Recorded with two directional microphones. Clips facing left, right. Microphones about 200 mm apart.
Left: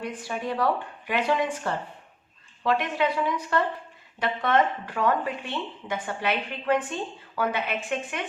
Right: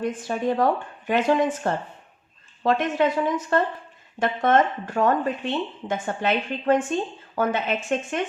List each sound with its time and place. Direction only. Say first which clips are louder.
0.0 s a woman's voice: right 6 dB; 45° right (ahead or behind)